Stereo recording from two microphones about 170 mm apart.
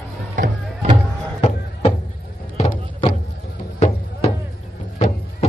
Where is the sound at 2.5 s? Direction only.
40° left (ahead or behind).